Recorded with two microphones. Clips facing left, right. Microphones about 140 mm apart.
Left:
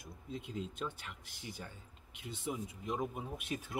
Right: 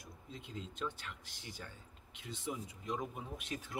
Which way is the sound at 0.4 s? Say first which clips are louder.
Left 1 dB; 10° left (ahead or behind).